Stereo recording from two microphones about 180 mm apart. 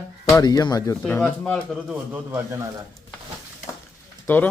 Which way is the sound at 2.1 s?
15° right (ahead or behind).